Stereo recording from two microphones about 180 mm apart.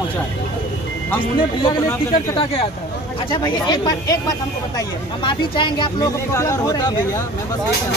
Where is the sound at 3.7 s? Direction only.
20° left (ahead or behind).